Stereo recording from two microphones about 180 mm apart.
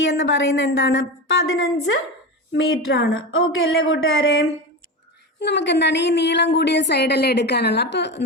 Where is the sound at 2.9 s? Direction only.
65° left (ahead or behind).